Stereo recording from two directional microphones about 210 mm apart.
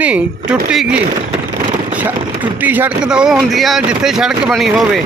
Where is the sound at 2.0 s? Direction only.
10° right (ahead or behind).